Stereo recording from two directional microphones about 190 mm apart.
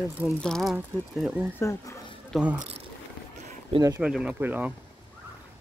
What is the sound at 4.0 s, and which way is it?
Speech, 5° right (ahead or behind).